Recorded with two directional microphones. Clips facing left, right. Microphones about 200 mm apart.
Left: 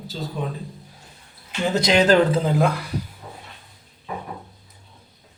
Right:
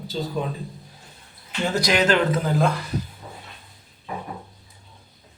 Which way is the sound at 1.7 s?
25° left (ahead or behind).